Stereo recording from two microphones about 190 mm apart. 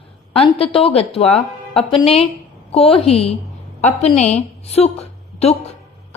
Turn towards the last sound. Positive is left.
turn(degrees=35)  # may be behind; listen again after turning